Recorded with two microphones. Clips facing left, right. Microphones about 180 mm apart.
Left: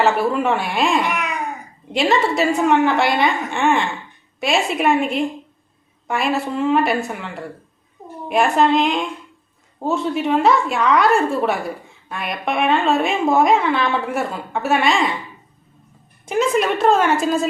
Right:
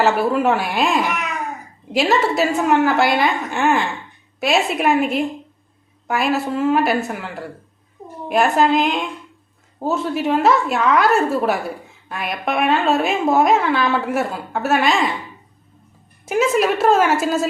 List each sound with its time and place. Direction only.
0.0 s a woman's voice: centre (ahead or behind)
16.2 s a woman's voice: 5° right (ahead or behind)